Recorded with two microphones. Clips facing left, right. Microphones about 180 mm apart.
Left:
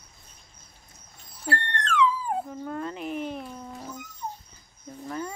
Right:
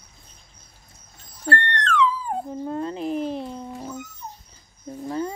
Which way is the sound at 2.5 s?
25° right (ahead or behind).